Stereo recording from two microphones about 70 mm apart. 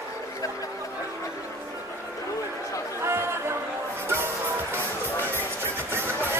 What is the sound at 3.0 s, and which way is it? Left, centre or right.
Chatter, right.